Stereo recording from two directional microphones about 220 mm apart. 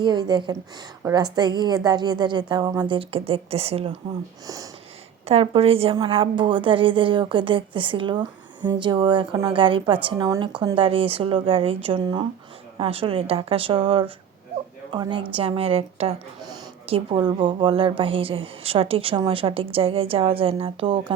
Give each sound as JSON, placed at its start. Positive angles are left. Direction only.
{"t": 0.0, "sound": "a woman's voice", "side_deg": -20}
{"t": 4.4, "sound": "speech", "side_deg": -15}
{"t": 5.2, "sound": "a woman's voice", "side_deg": -25}